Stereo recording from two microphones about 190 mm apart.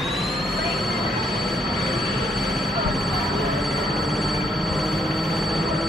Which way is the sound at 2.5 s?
Centre (ahead or behind).